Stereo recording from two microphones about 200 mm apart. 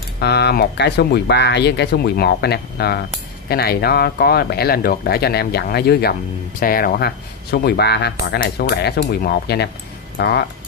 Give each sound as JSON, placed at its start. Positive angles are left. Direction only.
{"t": 0.2, "sound": "speech", "side_deg": 55}